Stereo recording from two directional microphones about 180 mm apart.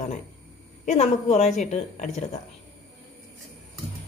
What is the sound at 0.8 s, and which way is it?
A woman's voice, 40° left (ahead or behind).